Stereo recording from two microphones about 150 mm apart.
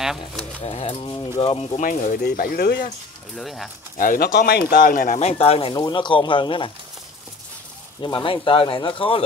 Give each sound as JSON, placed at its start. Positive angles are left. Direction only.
{"t": 0.0, "sound": "speech", "side_deg": 0}
{"t": 0.7, "sound": "speech", "side_deg": 40}
{"t": 1.1, "sound": "speech", "side_deg": 25}
{"t": 1.5, "sound": "speech", "side_deg": 40}
{"t": 1.8, "sound": "speech", "side_deg": 60}
{"t": 3.3, "sound": "speech", "side_deg": 0}
{"t": 4.0, "sound": "speech", "side_deg": 65}
{"t": 5.2, "sound": "speech", "side_deg": 45}
{"t": 5.8, "sound": "speech", "side_deg": 30}
{"t": 8.0, "sound": "speech", "side_deg": 35}